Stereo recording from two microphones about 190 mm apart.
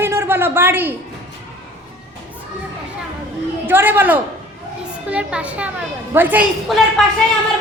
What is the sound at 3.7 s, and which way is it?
A child's voice, 10° right (ahead or behind).